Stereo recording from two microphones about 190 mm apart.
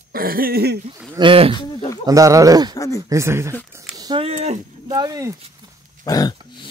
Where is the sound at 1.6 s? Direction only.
25° left (ahead or behind).